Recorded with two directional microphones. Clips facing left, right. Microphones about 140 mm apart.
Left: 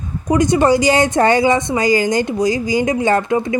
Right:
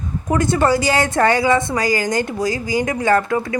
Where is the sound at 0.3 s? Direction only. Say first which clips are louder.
Left 3 dB; 15° left (ahead or behind).